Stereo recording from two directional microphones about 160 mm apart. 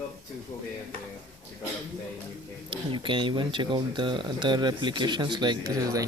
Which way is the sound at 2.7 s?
30° right (ahead or behind).